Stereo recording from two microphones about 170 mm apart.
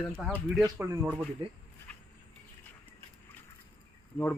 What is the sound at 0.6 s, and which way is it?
Speech, 15° right (ahead or behind).